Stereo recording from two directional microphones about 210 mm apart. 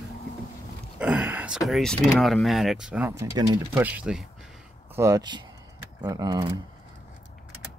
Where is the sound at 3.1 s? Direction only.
15° right (ahead or behind).